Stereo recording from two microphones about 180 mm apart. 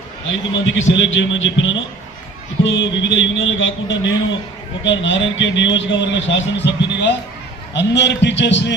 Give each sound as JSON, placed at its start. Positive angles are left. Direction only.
{"t": 0.3, "sound": "a man's voice", "side_deg": 90}